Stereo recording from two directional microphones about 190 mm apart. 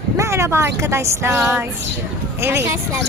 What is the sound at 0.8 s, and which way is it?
Speech, 15° right (ahead or behind).